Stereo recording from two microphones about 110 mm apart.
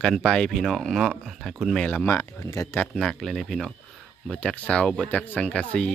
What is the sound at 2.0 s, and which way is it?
Speech, 25° left (ahead or behind).